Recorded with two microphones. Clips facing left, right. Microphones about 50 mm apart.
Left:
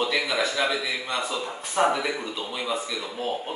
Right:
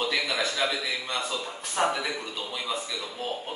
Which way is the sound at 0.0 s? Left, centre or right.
Centre.